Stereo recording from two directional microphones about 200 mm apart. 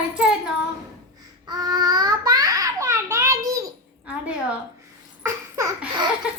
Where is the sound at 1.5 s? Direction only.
20° right (ahead or behind).